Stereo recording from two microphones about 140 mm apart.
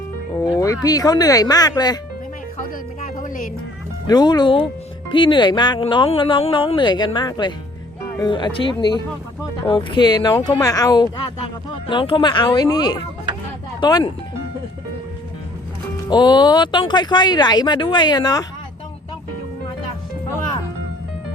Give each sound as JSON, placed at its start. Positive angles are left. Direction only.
{"t": 0.3, "sound": "speech", "side_deg": 25}
{"t": 3.0, "sound": "music", "side_deg": 75}
{"t": 4.0, "sound": "speech", "side_deg": 30}
{"t": 16.0, "sound": "speech", "side_deg": 30}